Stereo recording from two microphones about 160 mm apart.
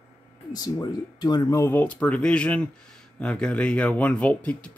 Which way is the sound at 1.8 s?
5° left (ahead or behind).